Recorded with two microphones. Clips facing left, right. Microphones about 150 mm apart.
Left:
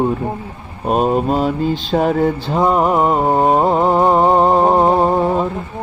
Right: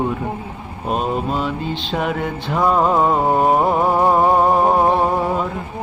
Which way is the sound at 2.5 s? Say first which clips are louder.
Left 1 dB; 20° left (ahead or behind).